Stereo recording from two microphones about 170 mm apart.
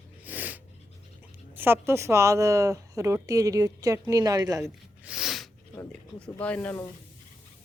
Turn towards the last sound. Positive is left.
turn(degrees=10)  # may be behind; listen again after turning